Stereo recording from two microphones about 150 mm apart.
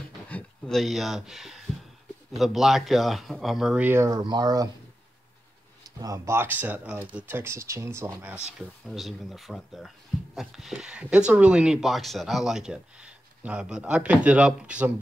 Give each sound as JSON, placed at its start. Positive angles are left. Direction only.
{"t": 0.3, "sound": "speech", "side_deg": 5}
{"t": 5.9, "sound": "speech", "side_deg": -25}
{"t": 8.5, "sound": "speech", "side_deg": -5}